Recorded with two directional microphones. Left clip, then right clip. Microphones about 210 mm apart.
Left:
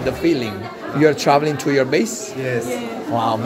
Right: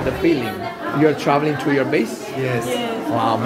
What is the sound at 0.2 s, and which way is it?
Speech, 30° left (ahead or behind).